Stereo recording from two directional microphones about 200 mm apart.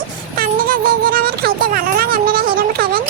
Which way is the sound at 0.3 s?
45° right (ahead or behind).